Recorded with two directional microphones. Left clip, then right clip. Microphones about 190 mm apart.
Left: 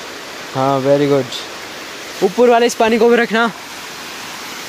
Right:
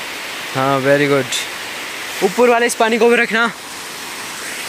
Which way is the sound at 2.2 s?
25° left (ahead or behind).